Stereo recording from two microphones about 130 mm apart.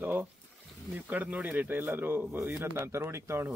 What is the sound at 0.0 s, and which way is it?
Speech, 15° right (ahead or behind).